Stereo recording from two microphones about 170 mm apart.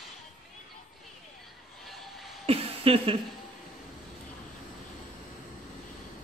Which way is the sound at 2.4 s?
35° right (ahead or behind).